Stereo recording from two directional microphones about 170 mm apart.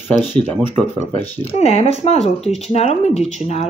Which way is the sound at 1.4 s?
35° left (ahead or behind).